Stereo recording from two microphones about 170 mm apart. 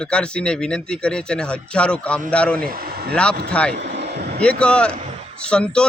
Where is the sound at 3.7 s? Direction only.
85° right.